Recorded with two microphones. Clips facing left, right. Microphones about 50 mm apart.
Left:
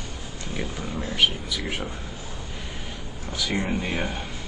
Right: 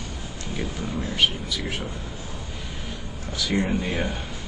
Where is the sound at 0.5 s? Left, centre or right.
Left.